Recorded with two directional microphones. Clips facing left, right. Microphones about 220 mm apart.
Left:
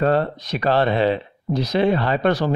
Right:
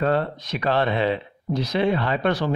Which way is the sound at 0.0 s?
40° left (ahead or behind).